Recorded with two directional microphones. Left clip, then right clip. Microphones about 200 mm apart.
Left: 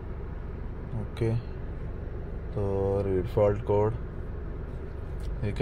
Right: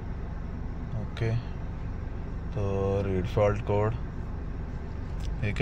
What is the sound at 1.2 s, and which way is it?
Speech, 25° left (ahead or behind).